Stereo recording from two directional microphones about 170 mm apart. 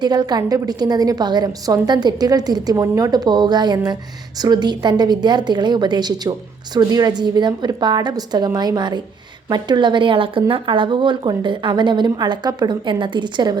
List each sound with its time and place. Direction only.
0.0 s a woman's voice: 25° right (ahead or behind)